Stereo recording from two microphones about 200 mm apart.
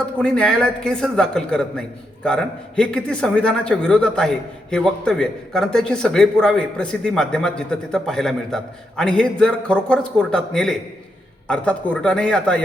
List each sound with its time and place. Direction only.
0.2 s a man's voice: 5° left (ahead or behind)